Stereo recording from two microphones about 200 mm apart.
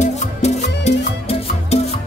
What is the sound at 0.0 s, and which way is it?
Music, 35° left (ahead or behind).